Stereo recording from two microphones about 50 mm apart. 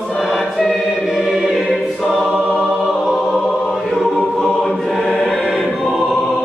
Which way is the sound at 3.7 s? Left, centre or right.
Centre.